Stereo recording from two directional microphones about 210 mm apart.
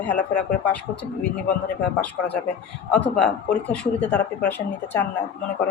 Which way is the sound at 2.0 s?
5° left (ahead or behind).